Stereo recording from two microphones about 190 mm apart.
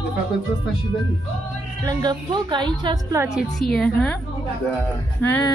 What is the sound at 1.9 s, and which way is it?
A woman's voice, 20° right (ahead or behind).